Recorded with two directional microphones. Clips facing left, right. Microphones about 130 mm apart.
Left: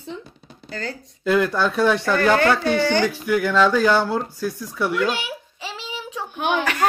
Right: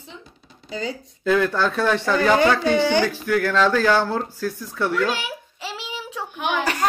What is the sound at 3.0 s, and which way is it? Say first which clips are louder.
Speech: left 1 dB; 10° left (ahead or behind).